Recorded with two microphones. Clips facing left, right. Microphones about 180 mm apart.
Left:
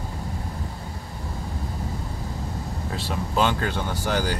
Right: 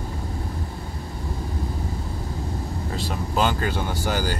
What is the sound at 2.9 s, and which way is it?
Speech, centre (ahead or behind).